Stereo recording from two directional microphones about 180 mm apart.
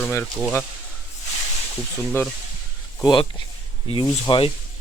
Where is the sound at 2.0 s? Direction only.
5° left (ahead or behind).